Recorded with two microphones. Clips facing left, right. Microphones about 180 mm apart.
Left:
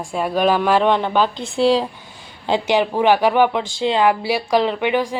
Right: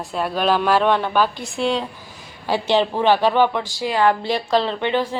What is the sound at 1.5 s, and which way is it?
Speech, 35° left (ahead or behind).